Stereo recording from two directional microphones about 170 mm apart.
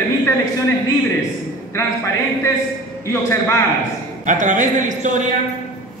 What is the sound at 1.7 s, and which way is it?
Speech, 15° left (ahead or behind).